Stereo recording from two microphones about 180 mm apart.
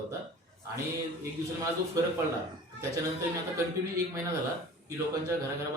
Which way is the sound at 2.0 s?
20° right (ahead or behind).